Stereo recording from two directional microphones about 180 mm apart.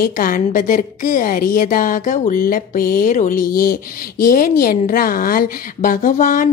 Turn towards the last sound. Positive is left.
turn(degrees=45)  # may be behind; listen again after turning